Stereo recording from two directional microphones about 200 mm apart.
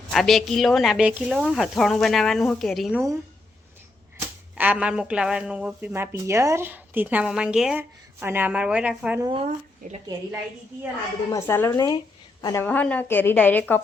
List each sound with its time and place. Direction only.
0.1 s speech: centre (ahead or behind)
4.2 s speech: 10° right (ahead or behind)
9.2 s speech: 25° right (ahead or behind)
9.8 s a woman's voice: 40° right (ahead or behind)
11.3 s a woman's voice: 15° left (ahead or behind)
12.6 s a woman's voice: 5° left (ahead or behind)